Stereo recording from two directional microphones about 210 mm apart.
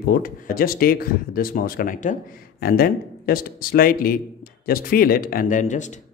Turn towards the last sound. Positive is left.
turn(degrees=35)  # may be behind; listen again after turning